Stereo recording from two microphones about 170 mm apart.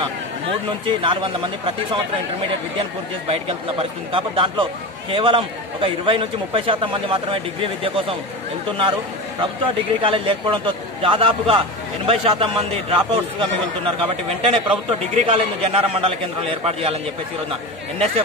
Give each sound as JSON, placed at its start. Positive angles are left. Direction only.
{"t": 0.8, "sound": "speech", "side_deg": -30}
{"t": 3.3, "sound": "a man's voice", "side_deg": -35}
{"t": 10.0, "sound": "a man's voice", "side_deg": -30}